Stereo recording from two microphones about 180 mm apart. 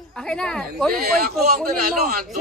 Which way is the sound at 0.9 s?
55° right (ahead or behind).